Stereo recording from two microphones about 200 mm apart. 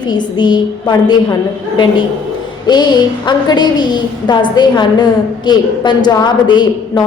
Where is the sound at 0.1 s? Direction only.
20° left (ahead or behind).